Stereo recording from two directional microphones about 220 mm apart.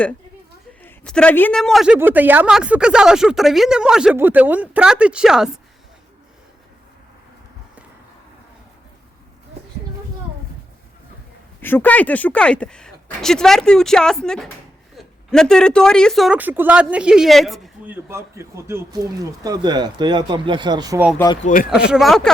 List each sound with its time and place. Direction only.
0.8 s a man's voice: 5° left (ahead or behind)
11.6 s a man's voice: 10° left (ahead or behind); by 21.0 s 20° right (ahead or behind)
21.4 s speech: 40° left (ahead or behind)
21.8 s a man's voice: 5° right (ahead or behind)